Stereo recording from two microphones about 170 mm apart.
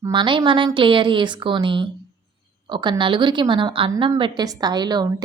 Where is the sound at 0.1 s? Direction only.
30° right (ahead or behind).